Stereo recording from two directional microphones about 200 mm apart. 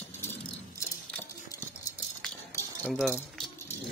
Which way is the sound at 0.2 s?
10° left (ahead or behind).